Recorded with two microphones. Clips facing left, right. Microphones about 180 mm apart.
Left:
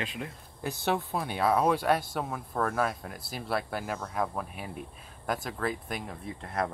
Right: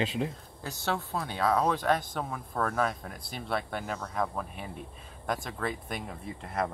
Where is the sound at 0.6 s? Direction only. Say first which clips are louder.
Left 3 dB; 15° left (ahead or behind).